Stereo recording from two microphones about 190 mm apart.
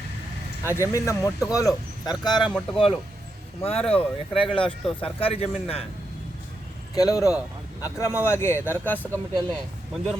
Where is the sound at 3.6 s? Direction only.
30° left (ahead or behind).